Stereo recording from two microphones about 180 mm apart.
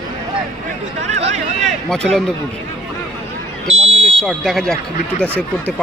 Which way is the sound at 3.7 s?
30° right (ahead or behind).